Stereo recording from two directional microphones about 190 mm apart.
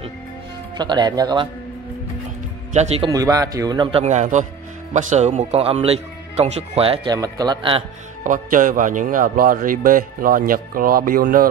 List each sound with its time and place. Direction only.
0.7 s speech: 20° right (ahead or behind)
2.7 s speech: 35° right (ahead or behind)
3.1 s speech: 20° right (ahead or behind)
8.2 s a man's voice: 45° right (ahead or behind)